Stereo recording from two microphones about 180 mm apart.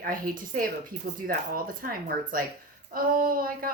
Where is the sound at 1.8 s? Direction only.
55° right (ahead or behind).